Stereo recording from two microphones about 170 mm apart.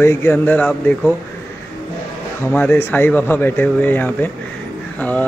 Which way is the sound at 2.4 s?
10° left (ahead or behind).